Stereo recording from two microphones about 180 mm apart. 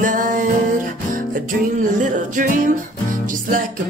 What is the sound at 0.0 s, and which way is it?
Music, 50° right (ahead or behind).